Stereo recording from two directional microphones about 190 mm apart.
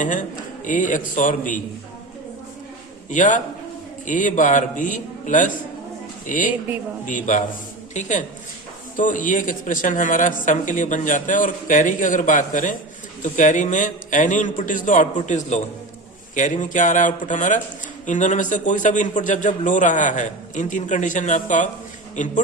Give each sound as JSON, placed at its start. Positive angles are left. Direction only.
{"t": 0.0, "sound": "a man's voice", "side_deg": 40}
{"t": 3.1, "sound": "a man's voice", "side_deg": 40}